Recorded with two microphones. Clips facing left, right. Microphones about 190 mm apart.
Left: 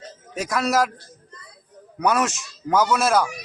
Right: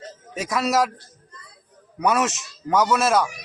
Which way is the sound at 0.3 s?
Centre (ahead or behind).